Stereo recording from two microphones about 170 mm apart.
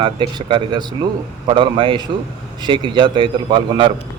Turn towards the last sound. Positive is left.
turn(degrees=-30)  # may be behind; listen again after turning